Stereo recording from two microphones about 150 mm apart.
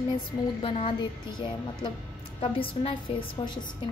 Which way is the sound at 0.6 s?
35° left (ahead or behind).